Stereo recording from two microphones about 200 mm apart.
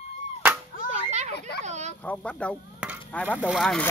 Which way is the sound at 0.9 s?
35° right (ahead or behind).